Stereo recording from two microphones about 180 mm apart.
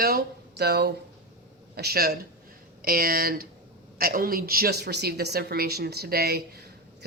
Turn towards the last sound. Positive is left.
turn(degrees=-60)  # may be behind; listen again after turning